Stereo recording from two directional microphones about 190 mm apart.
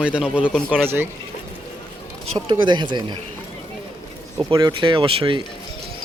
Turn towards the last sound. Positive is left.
turn(degrees=-25)  # may be behind; listen again after turning